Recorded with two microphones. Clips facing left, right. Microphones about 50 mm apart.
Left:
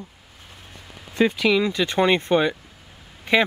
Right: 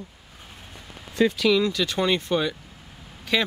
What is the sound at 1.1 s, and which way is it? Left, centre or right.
Speech, left.